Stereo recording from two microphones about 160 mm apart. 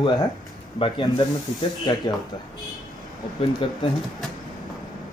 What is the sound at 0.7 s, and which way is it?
Speech, 30° left (ahead or behind).